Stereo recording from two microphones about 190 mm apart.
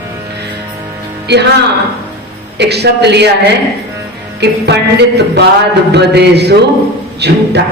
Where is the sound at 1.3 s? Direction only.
60° right (ahead or behind).